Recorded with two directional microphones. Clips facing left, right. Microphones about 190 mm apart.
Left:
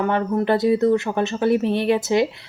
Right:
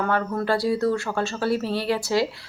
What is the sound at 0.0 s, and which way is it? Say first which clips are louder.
Speech: left 4 dB; 20° left (ahead or behind).